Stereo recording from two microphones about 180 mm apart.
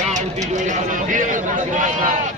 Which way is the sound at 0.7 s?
45° right (ahead or behind).